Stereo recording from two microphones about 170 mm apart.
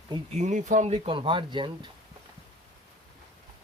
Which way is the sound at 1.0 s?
30° right (ahead or behind).